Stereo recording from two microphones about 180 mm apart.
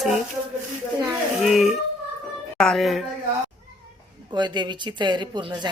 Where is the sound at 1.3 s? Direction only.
Centre (ahead or behind).